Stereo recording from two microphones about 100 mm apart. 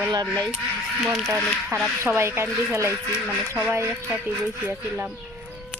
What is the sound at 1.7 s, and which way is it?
Speech, 30° right (ahead or behind).